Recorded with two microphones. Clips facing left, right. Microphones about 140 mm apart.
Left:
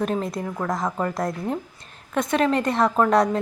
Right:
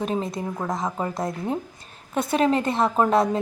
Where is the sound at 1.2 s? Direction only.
Centre (ahead or behind).